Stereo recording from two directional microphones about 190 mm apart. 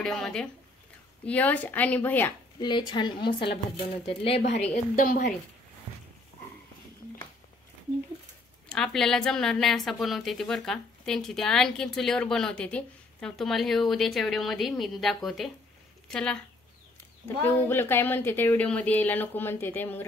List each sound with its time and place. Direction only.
0.0 s a woman's voice: centre (ahead or behind)
2.6 s a woman's voice: 25° left (ahead or behind)
5.0 s a woman's voice: 50° left (ahead or behind)
8.6 s a woman's voice: 5° left (ahead or behind)
17.5 s speech: 10° left (ahead or behind)